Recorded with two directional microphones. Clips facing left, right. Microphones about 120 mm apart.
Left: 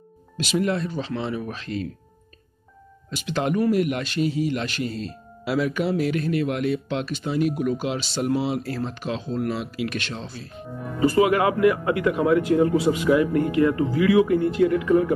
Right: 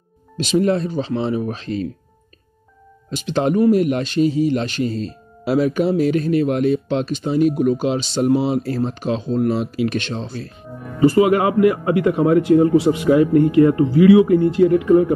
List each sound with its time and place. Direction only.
0.4 s a man's voice: 30° right (ahead or behind)
3.3 s a man's voice: 30° right (ahead or behind)